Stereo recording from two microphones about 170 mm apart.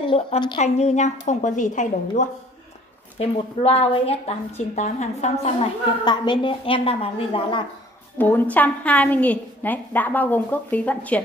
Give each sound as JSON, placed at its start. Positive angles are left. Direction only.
{"t": 0.0, "sound": "a woman's voice", "side_deg": 30}
{"t": 0.6, "sound": "a woman's voice", "side_deg": 40}
{"t": 3.2, "sound": "a woman's voice", "side_deg": 35}
{"t": 6.0, "sound": "a woman's voice", "side_deg": 25}
{"t": 8.2, "sound": "a woman's voice", "side_deg": 10}